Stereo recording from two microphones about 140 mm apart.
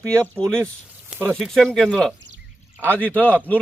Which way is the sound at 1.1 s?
15° right (ahead or behind).